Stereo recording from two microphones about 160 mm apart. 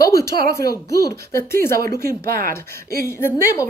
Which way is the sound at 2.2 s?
65° right (ahead or behind).